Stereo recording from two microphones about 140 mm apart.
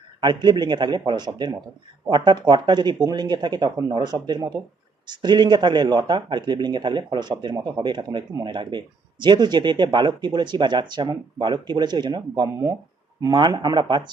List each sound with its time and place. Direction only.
0.2 s a man's voice: 30° right (ahead or behind)
13.2 s a man's voice: 30° right (ahead or behind)